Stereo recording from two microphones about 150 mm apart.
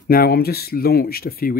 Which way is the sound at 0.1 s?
90° left.